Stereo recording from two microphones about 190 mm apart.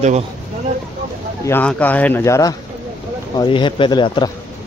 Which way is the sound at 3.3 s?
25° left (ahead or behind).